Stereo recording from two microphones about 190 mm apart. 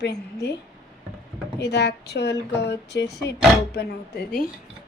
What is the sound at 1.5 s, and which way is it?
A woman's voice, 60° left (ahead or behind).